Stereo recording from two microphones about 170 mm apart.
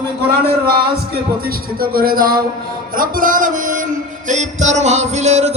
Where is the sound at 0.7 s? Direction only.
65° right (ahead or behind).